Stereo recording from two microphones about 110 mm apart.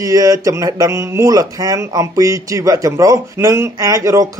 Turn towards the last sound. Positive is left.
turn(degrees=-30)  # may be behind; listen again after turning